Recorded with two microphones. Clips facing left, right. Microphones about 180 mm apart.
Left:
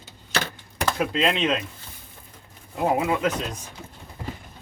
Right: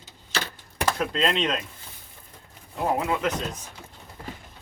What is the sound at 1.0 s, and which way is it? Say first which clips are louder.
Speech: left 3 dB; 5° left (ahead or behind).